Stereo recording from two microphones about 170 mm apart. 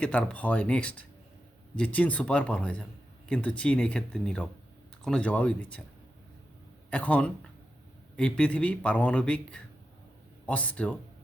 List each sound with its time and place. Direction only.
0.0 s speech: 5° left (ahead or behind)
6.9 s speech: 10° left (ahead or behind)